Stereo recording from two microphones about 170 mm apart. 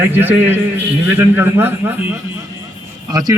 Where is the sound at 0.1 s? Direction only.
10° right (ahead or behind).